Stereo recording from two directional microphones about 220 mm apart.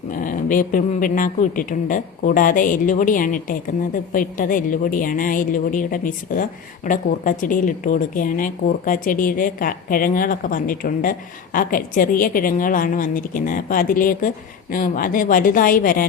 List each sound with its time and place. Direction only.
0.1 s a woman's voice: 35° left (ahead or behind)